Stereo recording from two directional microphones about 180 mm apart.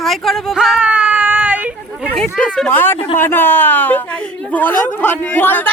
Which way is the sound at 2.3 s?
5° left (ahead or behind).